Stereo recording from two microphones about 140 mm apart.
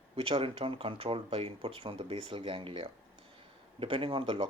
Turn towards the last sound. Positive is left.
turn(degrees=-40)  # may be behind; listen again after turning